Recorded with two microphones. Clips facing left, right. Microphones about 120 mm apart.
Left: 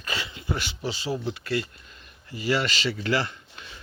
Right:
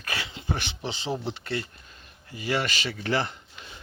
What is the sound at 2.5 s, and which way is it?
Speech, 15° right (ahead or behind).